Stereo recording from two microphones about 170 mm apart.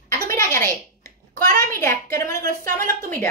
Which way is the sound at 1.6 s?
15° left (ahead or behind).